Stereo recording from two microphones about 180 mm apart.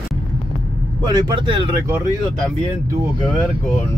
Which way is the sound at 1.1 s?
25° right (ahead or behind).